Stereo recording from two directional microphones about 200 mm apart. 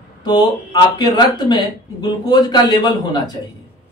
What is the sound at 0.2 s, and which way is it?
Speech, 20° left (ahead or behind).